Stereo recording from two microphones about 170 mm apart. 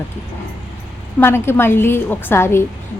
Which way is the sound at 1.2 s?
15° left (ahead or behind).